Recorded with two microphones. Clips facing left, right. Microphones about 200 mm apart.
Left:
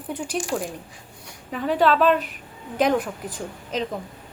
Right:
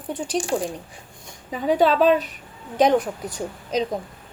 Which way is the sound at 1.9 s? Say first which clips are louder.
Right 2 dB; 40° right (ahead or behind).